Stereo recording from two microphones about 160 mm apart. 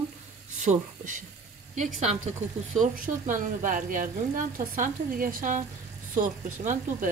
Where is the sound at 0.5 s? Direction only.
50° right (ahead or behind).